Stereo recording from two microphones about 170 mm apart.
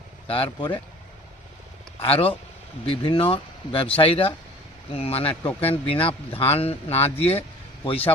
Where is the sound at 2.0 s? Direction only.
35° left (ahead or behind).